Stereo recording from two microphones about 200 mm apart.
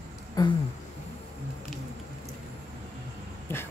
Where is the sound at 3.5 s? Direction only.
10° left (ahead or behind).